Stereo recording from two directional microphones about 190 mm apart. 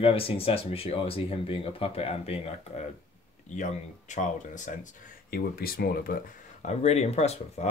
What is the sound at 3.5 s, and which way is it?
Speech, 40° left (ahead or behind).